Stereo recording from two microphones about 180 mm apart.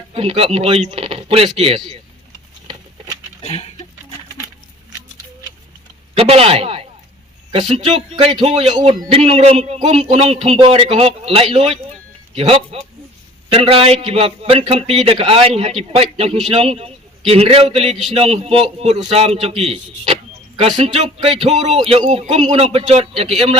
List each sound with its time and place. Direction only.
0.1 s a man's voice: 30° right (ahead or behind)
3.4 s a sound: 35° left (ahead or behind)
6.1 s speech: 35° right (ahead or behind)
7.9 s a man's voice: 25° right (ahead or behind)